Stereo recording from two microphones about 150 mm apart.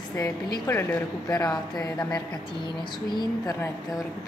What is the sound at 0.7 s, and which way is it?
Speech, 20° left (ahead or behind).